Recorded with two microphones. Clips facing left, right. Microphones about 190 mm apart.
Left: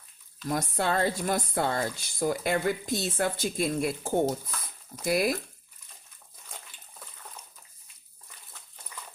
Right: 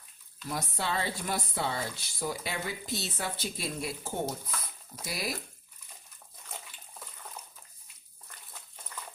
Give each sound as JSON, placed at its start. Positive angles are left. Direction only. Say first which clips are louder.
{"t": 0.4, "sound": "speech", "louder": "left 6 dB", "side_deg": 50}